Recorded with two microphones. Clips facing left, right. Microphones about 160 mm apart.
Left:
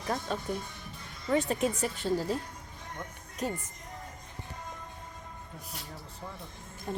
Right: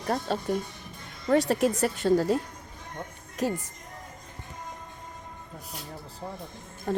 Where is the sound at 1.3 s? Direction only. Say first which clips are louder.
Right 5 dB; 85° right.